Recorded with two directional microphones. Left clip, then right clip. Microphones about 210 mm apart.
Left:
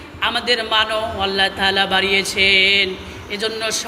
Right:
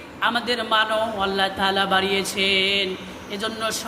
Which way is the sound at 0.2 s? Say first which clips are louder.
Left 4 dB; 15° right (ahead or behind).